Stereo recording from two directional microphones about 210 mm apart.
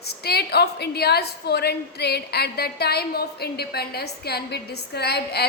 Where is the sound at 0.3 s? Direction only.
50° left (ahead or behind).